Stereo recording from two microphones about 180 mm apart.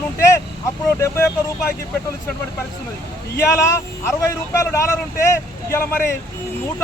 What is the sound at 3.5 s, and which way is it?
Speech, 15° left (ahead or behind).